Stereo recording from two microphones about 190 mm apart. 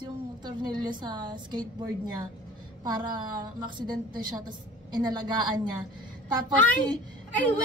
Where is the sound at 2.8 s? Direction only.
20° right (ahead or behind).